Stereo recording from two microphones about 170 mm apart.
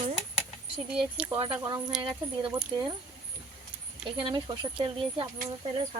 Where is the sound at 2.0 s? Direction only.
30° right (ahead or behind).